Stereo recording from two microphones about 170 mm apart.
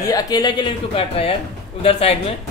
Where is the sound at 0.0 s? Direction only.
20° left (ahead or behind).